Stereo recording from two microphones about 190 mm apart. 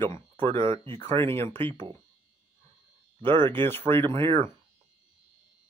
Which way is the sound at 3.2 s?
25° right (ahead or behind).